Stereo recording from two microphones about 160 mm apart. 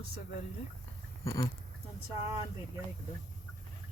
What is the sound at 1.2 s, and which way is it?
Speech, 20° left (ahead or behind).